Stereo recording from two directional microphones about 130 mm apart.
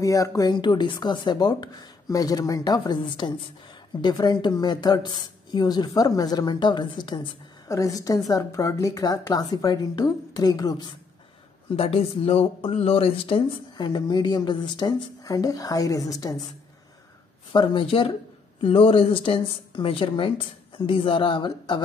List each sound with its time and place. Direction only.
0.0 s a woman's voice: 25° left (ahead or behind)
11.7 s speech: 45° left (ahead or behind); by 16.3 s 25° left (ahead or behind)
17.5 s speech: 40° left (ahead or behind)